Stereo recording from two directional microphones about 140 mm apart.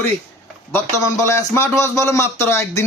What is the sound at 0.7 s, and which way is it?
A man's voice, 20° left (ahead or behind).